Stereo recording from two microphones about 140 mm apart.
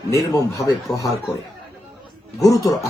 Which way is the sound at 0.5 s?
25° left (ahead or behind).